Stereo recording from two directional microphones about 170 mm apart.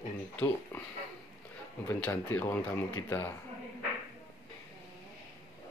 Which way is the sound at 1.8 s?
10° left (ahead or behind).